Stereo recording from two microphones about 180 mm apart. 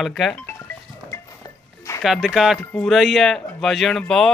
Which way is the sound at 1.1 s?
20° left (ahead or behind).